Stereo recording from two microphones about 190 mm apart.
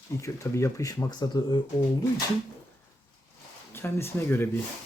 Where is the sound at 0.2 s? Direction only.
15° left (ahead or behind).